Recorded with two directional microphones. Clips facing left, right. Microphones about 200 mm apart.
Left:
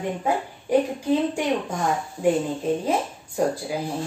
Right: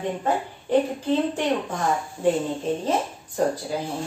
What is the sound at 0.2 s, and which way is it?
A woman's voice, 10° left (ahead or behind).